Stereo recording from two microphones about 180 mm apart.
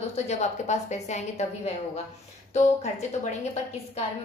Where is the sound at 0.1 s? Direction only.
40° left (ahead or behind).